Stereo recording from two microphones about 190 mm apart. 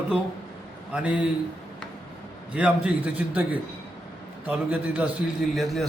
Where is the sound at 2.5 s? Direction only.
5° right (ahead or behind).